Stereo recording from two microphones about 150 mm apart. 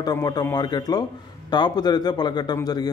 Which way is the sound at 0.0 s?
25° left (ahead or behind).